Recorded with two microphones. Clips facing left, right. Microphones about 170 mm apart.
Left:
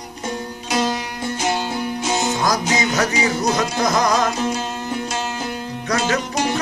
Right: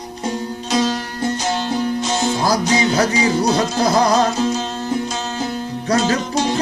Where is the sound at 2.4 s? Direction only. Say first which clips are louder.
Right 3 dB; 30° right (ahead or behind).